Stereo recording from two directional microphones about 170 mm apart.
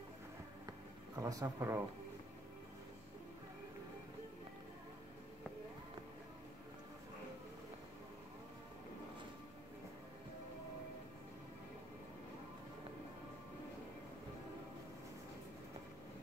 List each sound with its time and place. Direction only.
1.1 s speech: 20° right (ahead or behind)